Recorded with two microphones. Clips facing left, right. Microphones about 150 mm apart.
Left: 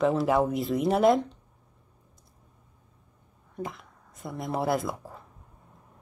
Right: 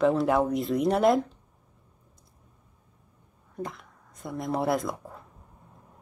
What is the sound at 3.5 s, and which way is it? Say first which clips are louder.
Speech: even; centre (ahead or behind).